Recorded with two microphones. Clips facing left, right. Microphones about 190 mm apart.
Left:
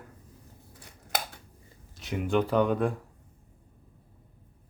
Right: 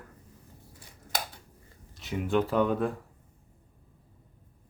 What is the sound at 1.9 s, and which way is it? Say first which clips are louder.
Speech: even; centre (ahead or behind).